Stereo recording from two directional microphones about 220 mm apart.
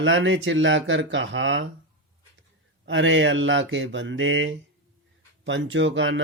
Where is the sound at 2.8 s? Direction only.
60° right (ahead or behind).